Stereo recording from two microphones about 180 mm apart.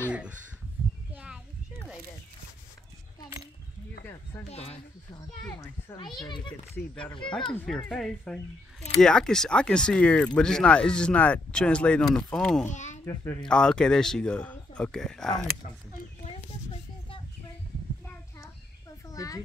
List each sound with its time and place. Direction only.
1.1 s a sound: 5° right (ahead or behind)
4.5 s speech: 35° left (ahead or behind)
5.1 s a child's voice: 20° left (ahead or behind)
6.7 s speech: 5° left (ahead or behind)
12.6 s speech: 40° left (ahead or behind)
13.0 s a child's voice: 20° left (ahead or behind)
13.5 s speech: 5° left (ahead or behind)
19.0 s a sound: 20° left (ahead or behind)